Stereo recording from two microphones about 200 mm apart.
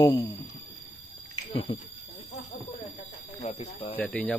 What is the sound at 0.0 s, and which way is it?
Speech, 25° left (ahead or behind).